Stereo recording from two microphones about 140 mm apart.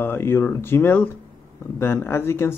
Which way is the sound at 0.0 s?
15° left (ahead or behind).